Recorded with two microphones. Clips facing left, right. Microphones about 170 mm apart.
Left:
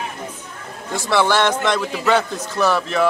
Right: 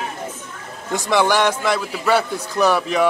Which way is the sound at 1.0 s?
15° right (ahead or behind).